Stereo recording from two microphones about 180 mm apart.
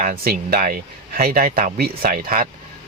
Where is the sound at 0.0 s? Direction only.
50° right (ahead or behind).